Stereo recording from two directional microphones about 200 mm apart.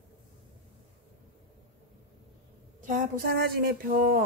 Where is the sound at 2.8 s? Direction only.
40° right (ahead or behind).